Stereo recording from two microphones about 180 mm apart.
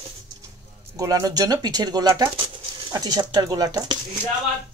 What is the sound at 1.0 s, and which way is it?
Speech, 20° right (ahead or behind).